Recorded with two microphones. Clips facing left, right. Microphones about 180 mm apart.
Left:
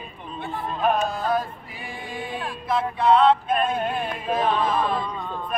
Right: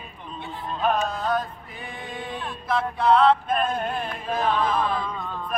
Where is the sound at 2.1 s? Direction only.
5° left (ahead or behind).